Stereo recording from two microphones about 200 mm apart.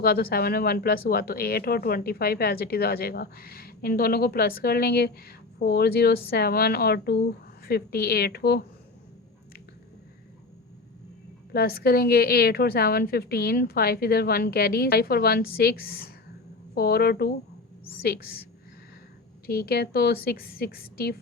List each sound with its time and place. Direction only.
0.0 s speech: 50° left (ahead or behind)
11.5 s speech: 50° left (ahead or behind)
19.5 s speech: 50° left (ahead or behind)